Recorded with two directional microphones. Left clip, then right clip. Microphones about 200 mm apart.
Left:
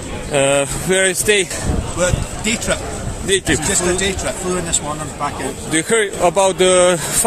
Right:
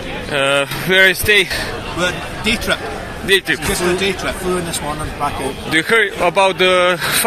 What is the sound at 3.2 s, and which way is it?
Speech, 15° left (ahead or behind).